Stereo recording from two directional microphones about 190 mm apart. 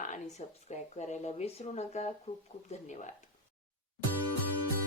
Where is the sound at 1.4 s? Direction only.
35° left (ahead or behind).